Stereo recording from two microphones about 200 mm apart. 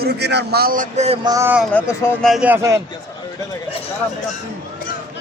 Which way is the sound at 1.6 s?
10° left (ahead or behind).